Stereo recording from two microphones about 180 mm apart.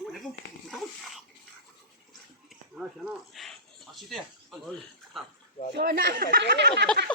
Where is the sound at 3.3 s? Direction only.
Centre (ahead or behind).